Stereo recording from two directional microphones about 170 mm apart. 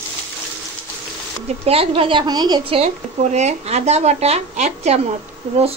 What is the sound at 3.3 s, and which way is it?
A woman's voice, 40° right (ahead or behind).